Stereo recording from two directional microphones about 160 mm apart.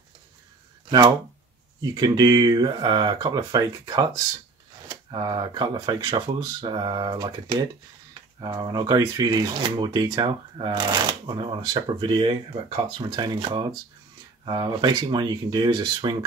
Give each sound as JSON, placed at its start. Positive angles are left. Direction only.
{"t": 0.8, "sound": "speech", "side_deg": -30}
{"t": 8.4, "sound": "speech", "side_deg": -25}